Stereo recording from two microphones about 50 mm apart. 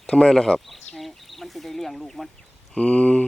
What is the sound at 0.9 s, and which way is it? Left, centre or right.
Speech, centre.